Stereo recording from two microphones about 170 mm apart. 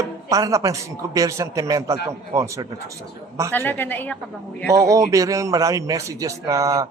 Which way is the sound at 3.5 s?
10° left (ahead or behind).